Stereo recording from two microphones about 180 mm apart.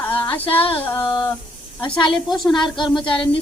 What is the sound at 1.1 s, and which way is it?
Speech, 20° left (ahead or behind).